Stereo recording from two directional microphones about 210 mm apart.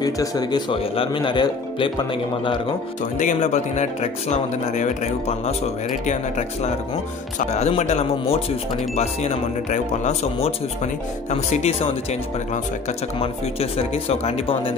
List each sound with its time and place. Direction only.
0.0 s speech: 15° left (ahead or behind)
3.2 s speech: 35° left (ahead or behind)
13.2 s speech: 30° left (ahead or behind)